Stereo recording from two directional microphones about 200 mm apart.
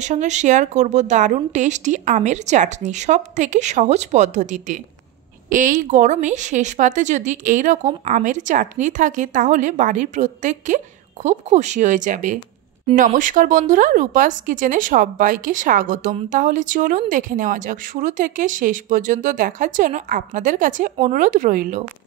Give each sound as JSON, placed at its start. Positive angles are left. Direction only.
{"t": 0.0, "sound": "speech", "side_deg": -35}